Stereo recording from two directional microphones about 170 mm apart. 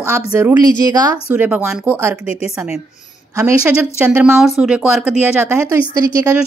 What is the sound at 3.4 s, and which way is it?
A woman's voice, 15° right (ahead or behind).